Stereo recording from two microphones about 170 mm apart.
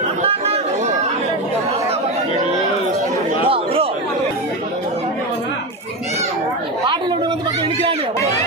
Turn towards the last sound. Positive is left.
turn(degrees=-25)  # may be behind; listen again after turning